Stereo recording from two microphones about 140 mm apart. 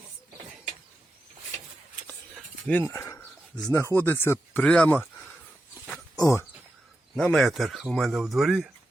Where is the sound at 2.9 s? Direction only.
20° left (ahead or behind).